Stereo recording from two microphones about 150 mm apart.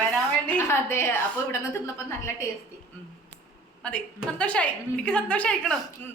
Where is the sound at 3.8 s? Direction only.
5° left (ahead or behind).